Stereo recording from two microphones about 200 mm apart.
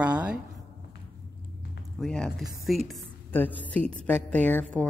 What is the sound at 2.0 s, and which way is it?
A woman's voice, centre (ahead or behind).